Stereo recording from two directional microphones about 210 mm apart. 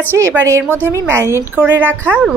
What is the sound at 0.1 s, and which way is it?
A woman's voice, 10° right (ahead or behind).